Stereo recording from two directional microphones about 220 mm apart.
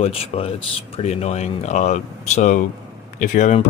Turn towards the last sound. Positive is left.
turn(degrees=35)  # may be behind; listen again after turning